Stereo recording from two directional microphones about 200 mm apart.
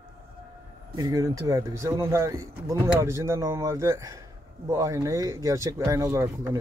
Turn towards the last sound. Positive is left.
turn(degrees=-15)  # may be behind; listen again after turning